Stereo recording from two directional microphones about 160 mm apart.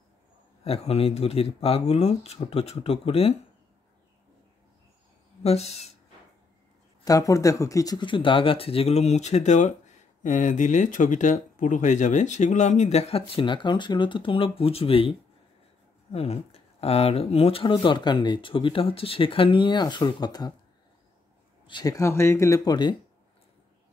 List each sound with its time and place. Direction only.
0.7 s speech: 40° left (ahead or behind)
5.4 s speech: 40° left (ahead or behind)
7.1 s speech: 20° left (ahead or behind)
21.6 s speech: 25° left (ahead or behind)